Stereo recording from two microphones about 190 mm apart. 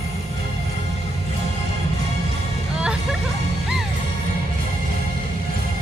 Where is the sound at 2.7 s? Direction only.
5° right (ahead or behind).